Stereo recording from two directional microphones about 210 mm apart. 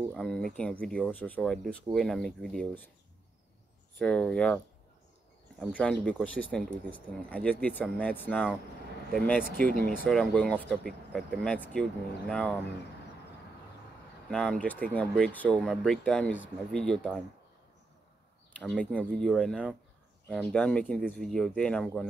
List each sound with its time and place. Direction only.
0.1 s speech: centre (ahead or behind)
4.0 s speech: 5° left (ahead or behind)
5.6 s speech: 5° left (ahead or behind)
9.4 s speech: 45° right (ahead or behind)
10.0 s speech: 5° left (ahead or behind)
14.3 s speech: 5° left (ahead or behind)
18.6 s speech: 5° left (ahead or behind)